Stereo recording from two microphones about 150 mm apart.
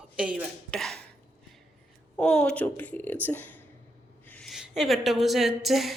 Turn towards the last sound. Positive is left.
turn(degrees=0)  # may be behind; listen again after turning